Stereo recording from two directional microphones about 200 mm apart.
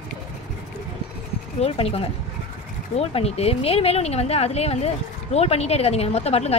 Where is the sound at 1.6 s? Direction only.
30° left (ahead or behind).